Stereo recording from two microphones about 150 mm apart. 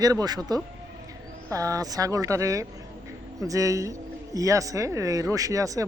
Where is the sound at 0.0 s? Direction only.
25° right (ahead or behind).